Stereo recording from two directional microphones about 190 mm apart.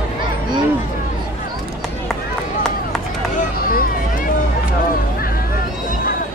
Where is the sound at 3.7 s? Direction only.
50° left (ahead or behind).